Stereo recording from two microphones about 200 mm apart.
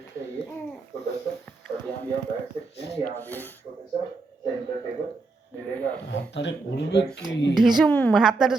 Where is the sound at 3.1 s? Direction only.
10° left (ahead or behind).